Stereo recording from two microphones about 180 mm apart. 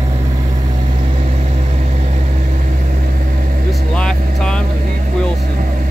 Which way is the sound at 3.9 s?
5° left (ahead or behind).